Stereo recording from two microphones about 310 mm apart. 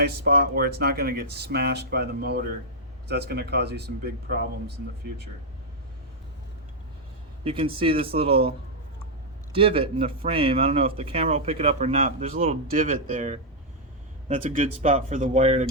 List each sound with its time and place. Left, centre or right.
0.0 s speech: right
7.4 s speech: centre
9.6 s speech: centre